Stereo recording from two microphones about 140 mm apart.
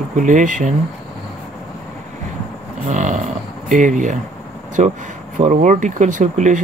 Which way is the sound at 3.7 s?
65° right (ahead or behind).